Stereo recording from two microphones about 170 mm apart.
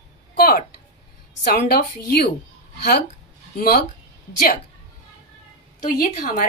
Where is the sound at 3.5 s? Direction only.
65° left (ahead or behind).